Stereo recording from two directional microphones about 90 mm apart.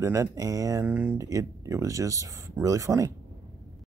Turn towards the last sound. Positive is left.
turn(degrees=-40)  # may be behind; listen again after turning